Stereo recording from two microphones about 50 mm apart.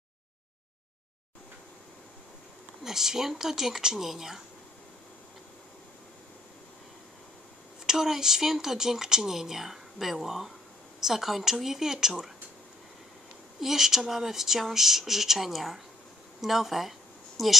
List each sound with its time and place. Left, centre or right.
2.8 s speech: centre
7.8 s speech: centre
13.6 s speech: centre